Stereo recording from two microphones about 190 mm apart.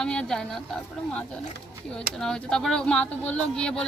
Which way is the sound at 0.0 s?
5° left (ahead or behind).